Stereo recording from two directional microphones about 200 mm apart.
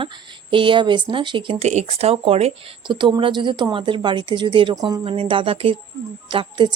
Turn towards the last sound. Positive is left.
turn(degrees=-25)  # may be behind; listen again after turning